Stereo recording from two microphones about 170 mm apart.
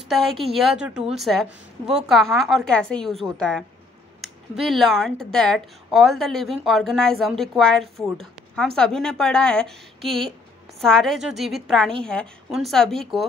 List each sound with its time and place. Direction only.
0.1 s a woman's voice: centre (ahead or behind)